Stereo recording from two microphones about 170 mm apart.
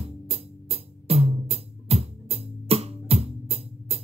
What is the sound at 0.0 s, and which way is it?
Music, 35° right (ahead or behind).